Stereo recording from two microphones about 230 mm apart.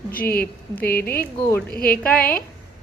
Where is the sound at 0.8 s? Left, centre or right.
Left.